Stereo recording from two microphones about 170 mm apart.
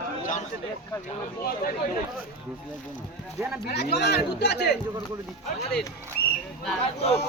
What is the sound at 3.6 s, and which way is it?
Speech, 75° left (ahead or behind).